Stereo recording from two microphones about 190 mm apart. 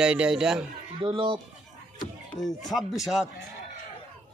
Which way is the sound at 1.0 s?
25° right (ahead or behind).